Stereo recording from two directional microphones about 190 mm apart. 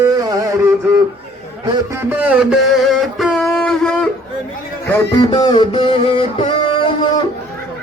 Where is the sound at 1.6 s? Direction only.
20° right (ahead or behind); by 4.1 s 5° left (ahead or behind).